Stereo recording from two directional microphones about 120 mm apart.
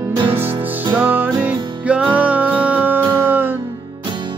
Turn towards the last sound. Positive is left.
turn(degrees=-15)  # may be behind; listen again after turning